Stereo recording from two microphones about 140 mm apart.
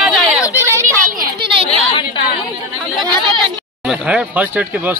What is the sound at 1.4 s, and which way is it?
Chatter, 35° right (ahead or behind).